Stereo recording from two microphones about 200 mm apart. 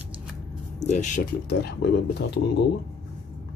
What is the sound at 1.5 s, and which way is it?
Speech, 55° left (ahead or behind).